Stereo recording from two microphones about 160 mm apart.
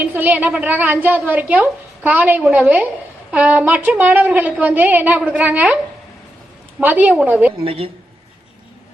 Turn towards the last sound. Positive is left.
turn(degrees=-35)  # may be behind; listen again after turning